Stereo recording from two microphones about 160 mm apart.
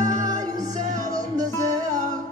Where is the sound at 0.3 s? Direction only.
20° right (ahead or behind).